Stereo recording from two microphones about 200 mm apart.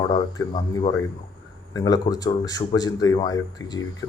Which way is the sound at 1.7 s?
20° left (ahead or behind).